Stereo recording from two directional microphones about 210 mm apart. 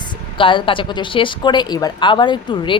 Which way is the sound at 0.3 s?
25° left (ahead or behind).